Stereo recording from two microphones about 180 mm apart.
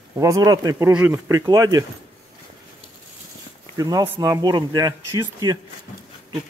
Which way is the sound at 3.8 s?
20° right (ahead or behind).